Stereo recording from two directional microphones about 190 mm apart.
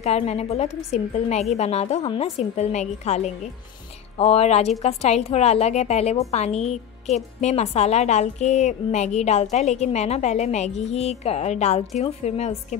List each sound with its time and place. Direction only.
0.0 s a woman's voice: 35° left (ahead or behind)